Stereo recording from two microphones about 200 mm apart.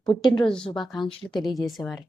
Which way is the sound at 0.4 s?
5° left (ahead or behind).